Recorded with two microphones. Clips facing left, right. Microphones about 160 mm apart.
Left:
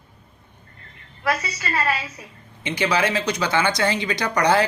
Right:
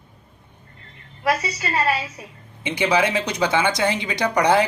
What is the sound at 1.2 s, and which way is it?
Speech, 20° right (ahead or behind).